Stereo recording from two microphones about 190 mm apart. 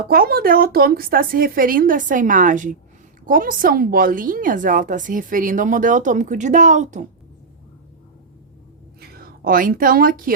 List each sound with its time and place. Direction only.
0.1 s a woman's voice: 50° right (ahead or behind)
9.0 s a woman's voice: 55° right (ahead or behind)